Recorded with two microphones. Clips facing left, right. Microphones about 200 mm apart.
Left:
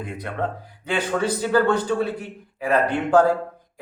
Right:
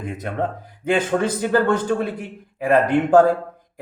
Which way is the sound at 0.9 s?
50° right (ahead or behind).